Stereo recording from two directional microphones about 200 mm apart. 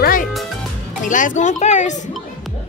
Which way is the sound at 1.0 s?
40° left (ahead or behind).